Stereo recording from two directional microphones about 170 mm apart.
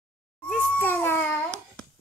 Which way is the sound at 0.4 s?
10° left (ahead or behind).